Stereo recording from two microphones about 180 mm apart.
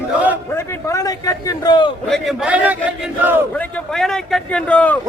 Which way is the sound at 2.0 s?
Centre (ahead or behind).